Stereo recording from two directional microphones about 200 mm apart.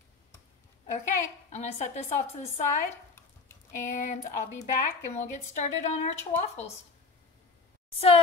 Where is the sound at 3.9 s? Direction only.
40° left (ahead or behind).